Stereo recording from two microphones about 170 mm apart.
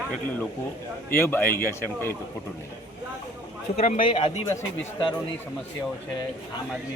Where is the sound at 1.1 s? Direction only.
15° left (ahead or behind).